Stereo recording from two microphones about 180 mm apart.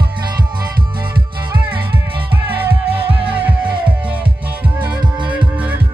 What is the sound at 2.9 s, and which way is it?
Music, 30° right (ahead or behind).